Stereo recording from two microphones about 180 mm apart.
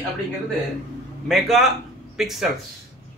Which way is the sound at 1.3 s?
Centre (ahead or behind).